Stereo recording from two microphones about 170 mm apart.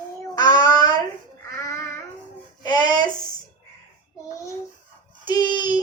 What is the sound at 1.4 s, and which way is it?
Child singing, 15° left (ahead or behind).